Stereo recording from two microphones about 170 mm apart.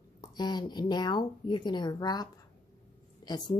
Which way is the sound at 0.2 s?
25° left (ahead or behind).